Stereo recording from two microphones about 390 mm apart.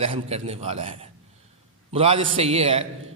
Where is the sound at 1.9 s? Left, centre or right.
Centre.